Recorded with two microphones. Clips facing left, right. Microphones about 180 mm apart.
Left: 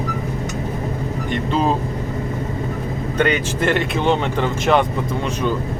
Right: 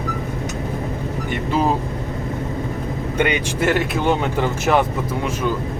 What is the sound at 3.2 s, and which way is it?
Speech, 10° right (ahead or behind).